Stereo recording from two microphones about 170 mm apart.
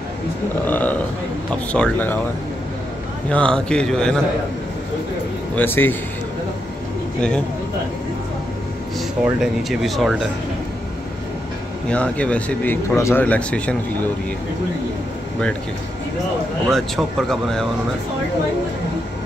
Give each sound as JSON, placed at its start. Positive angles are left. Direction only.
{"t": 0.7, "sound": "speech", "side_deg": 10}
{"t": 3.3, "sound": "speech", "side_deg": 5}
{"t": 5.6, "sound": "speech", "side_deg": 10}
{"t": 7.2, "sound": "speech", "side_deg": 5}
{"t": 9.2, "sound": "speech", "side_deg": 0}
{"t": 11.9, "sound": "speech", "side_deg": 5}
{"t": 16.7, "sound": "speech", "side_deg": 0}